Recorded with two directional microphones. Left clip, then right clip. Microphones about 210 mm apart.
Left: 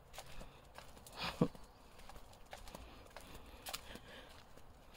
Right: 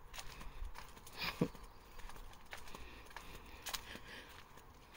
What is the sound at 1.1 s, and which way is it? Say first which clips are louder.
Horse: left 1 dB; 15° left (ahead or behind).